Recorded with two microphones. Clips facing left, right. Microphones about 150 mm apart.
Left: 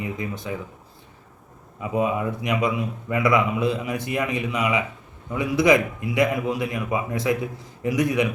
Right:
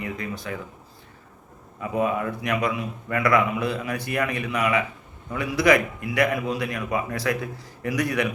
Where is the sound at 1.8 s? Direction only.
15° left (ahead or behind).